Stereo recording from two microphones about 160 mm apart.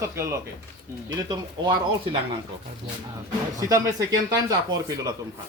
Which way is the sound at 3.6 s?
20° right (ahead or behind).